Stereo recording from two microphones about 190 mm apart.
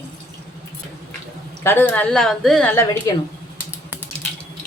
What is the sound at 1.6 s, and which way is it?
A woman's voice, 10° left (ahead or behind).